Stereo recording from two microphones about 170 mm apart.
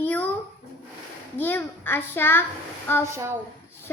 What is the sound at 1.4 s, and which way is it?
A child's voice, 10° left (ahead or behind).